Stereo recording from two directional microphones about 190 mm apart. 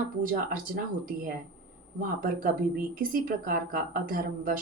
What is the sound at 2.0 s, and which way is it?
Speech, 45° right (ahead or behind).